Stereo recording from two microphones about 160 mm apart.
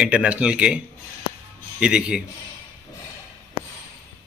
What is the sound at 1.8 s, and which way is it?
Speech, 5° right (ahead or behind).